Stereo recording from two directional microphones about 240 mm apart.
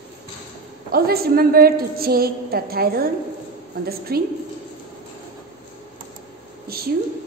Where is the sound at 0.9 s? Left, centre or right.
Right.